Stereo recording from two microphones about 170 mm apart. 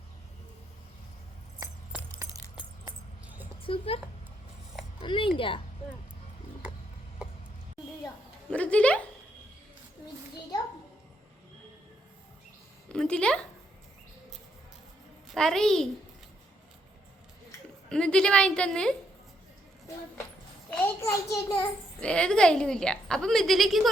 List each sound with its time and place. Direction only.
2.8 s a sound: 10° right (ahead or behind)
3.6 s speech: 35° left (ahead or behind)
4.9 s a sound: 30° left (ahead or behind)
8.4 s a child's voice: 5° left (ahead or behind)
12.9 s speech: 5° left (ahead or behind)
15.3 s a woman's voice: 5° left (ahead or behind)
17.8 s a woman's voice: 5° left (ahead or behind)
20.7 s a child's voice: 15° left (ahead or behind)
22.0 s a woman's voice: 5° left (ahead or behind)